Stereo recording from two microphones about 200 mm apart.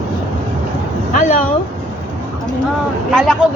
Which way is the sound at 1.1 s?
35° left (ahead or behind).